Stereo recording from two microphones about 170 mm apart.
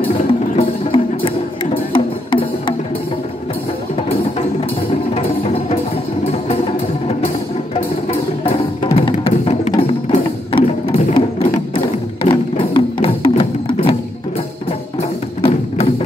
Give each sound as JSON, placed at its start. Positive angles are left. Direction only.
{"t": 0.0, "sound": "music", "side_deg": 35}
{"t": 5.1, "sound": "music", "side_deg": 35}
{"t": 8.1, "sound": "music", "side_deg": 35}
{"t": 15.0, "sound": "music", "side_deg": 35}